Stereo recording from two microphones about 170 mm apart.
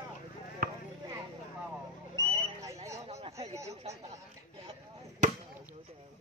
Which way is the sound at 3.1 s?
40° right (ahead or behind).